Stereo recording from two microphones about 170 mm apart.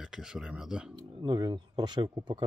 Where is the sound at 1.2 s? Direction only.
25° right (ahead or behind).